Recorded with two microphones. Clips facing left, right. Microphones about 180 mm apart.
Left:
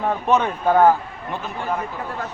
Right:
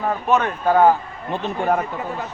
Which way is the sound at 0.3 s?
15° left (ahead or behind).